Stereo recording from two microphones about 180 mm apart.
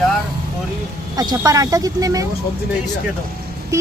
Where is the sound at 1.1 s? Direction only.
20° right (ahead or behind).